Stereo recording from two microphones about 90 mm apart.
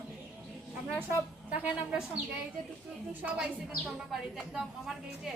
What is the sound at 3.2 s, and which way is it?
Speech, 15° right (ahead or behind).